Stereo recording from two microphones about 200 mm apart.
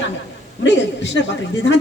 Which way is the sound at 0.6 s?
60° left (ahead or behind).